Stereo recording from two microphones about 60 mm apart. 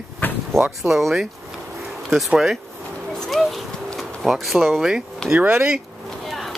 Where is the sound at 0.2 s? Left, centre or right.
Left.